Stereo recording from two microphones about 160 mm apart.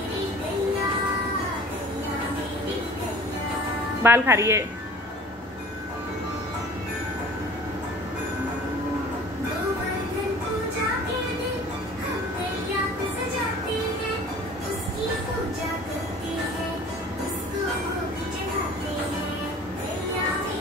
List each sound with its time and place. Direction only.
4.0 s a woman's voice: 15° right (ahead or behind)